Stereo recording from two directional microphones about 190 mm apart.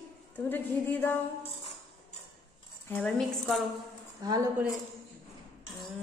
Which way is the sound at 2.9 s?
5° left (ahead or behind).